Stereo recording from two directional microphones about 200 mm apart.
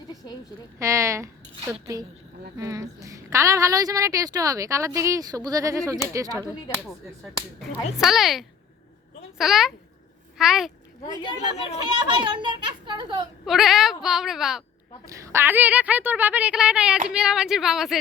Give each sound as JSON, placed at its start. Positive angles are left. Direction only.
{"t": 0.8, "sound": "a woman's voice", "side_deg": -15}
{"t": 6.3, "sound": "speech", "side_deg": 10}
{"t": 7.9, "sound": "a child's voice", "side_deg": 0}
{"t": 11.9, "sound": "a child's voice", "side_deg": -25}
{"t": 13.4, "sound": "speech", "side_deg": 0}
{"t": 15.0, "sound": "a woman's voice", "side_deg": -15}